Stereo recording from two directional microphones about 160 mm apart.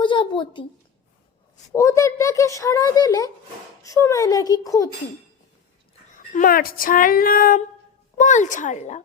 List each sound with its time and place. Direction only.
0.0 s a sound: 30° left (ahead or behind)
1.7 s a child's voice: 20° left (ahead or behind)
6.1 s speech: 60° left (ahead or behind)
8.2 s a woman's voice: 50° left (ahead or behind)